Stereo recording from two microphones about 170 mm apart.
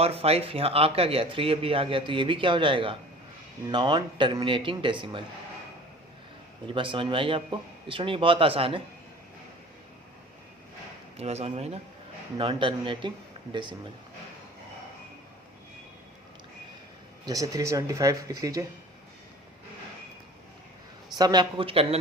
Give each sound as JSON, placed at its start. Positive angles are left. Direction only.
{"t": 0.0, "sound": "speech", "side_deg": -35}
{"t": 6.7, "sound": "speech", "side_deg": -30}
{"t": 11.2, "sound": "speech", "side_deg": -40}
{"t": 17.2, "sound": "speech", "side_deg": -20}
{"t": 21.2, "sound": "speech", "side_deg": -25}